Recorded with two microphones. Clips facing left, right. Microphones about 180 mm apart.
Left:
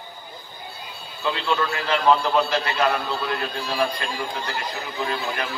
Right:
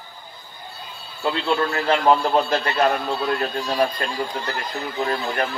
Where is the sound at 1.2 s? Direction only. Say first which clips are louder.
Right 2 dB; 35° right (ahead or behind).